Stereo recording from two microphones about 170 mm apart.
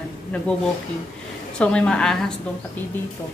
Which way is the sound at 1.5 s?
5° left (ahead or behind).